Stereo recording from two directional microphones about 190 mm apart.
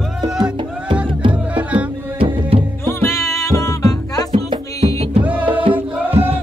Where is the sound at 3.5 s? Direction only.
15° left (ahead or behind).